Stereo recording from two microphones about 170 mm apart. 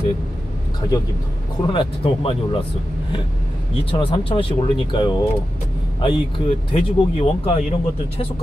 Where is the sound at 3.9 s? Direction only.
30° left (ahead or behind).